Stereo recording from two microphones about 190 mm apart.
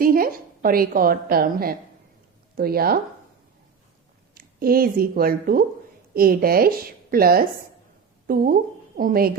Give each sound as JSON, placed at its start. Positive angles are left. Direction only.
{"t": 0.0, "sound": "a woman's voice", "side_deg": -50}
{"t": 4.4, "sound": "a woman's voice", "side_deg": -50}